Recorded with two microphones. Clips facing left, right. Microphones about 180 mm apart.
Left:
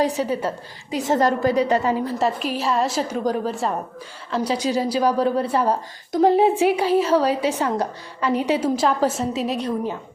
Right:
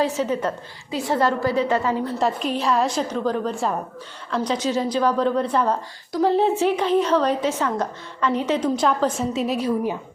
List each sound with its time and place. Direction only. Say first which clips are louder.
0.0 s a woman's voice: even; 15° left (ahead or behind)
1.0 s a woman's voice: left 2 dB; 45° left (ahead or behind)
1.4 s a woman's voice: left 2 dB; 15° left (ahead or behind)
2.1 s a woman's voice: even; 5° left (ahead or behind)